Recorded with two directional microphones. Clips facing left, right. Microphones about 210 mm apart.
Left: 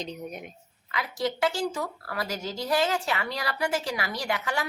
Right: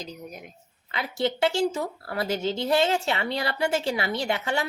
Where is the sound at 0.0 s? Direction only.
5° right (ahead or behind).